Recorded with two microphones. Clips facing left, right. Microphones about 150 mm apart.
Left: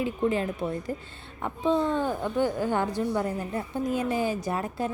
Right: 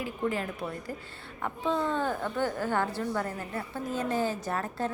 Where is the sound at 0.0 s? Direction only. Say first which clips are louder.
Left 5 dB; 20° left (ahead or behind).